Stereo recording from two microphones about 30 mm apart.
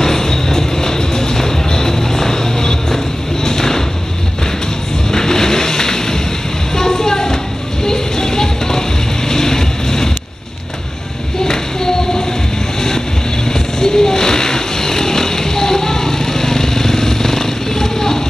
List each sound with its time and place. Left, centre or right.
0.0 s music: centre
3.4 s a sound: centre
5.1 s vehicle: centre
6.7 s a sound: centre
7.8 s music: centre
9.3 s vehicle: centre
11.4 s singing: centre
13.5 s vehicle: centre